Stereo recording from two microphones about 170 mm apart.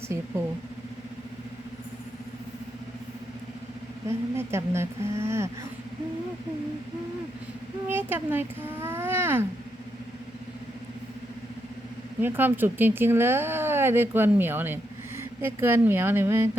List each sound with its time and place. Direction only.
4.0 s a woman's voice: 20° right (ahead or behind)
7.9 s speech: 10° right (ahead or behind)
12.2 s speech: 10° right (ahead or behind)